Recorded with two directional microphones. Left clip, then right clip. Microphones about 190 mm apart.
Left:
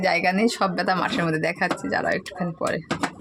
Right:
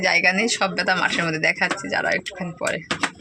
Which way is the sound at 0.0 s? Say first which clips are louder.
Right 2 dB; 10° left (ahead or behind).